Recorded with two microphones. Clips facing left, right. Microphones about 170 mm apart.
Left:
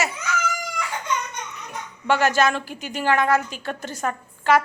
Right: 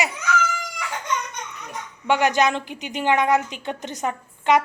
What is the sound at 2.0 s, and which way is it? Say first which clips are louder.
A woman's voice: even; 15° right (ahead or behind).